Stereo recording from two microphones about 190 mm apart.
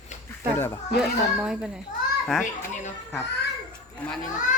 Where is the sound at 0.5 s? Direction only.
15° left (ahead or behind).